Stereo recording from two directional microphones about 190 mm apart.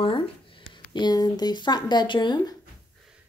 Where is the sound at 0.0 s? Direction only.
25° left (ahead or behind).